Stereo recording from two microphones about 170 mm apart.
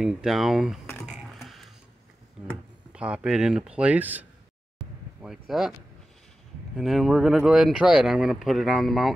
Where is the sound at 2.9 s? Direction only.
5° right (ahead or behind).